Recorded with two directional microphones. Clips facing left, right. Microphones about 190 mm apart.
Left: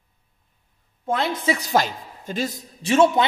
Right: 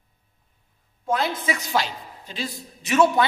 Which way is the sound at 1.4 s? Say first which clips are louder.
Left 4 dB; 35° left (ahead or behind).